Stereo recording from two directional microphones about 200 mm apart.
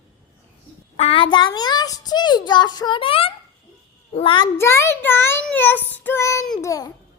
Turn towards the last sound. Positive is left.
turn(degrees=15)  # may be behind; listen again after turning